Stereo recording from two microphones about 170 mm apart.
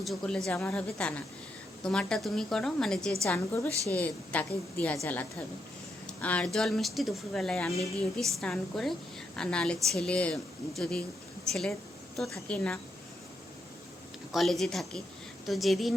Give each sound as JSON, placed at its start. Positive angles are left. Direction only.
{"t": 0.0, "sound": "a woman's voice", "side_deg": 0}
{"t": 3.2, "sound": "a woman's voice", "side_deg": 15}
{"t": 6.1, "sound": "a woman's voice", "side_deg": 5}
{"t": 12.1, "sound": "a woman's voice", "side_deg": 0}
{"t": 14.3, "sound": "a woman's voice", "side_deg": 0}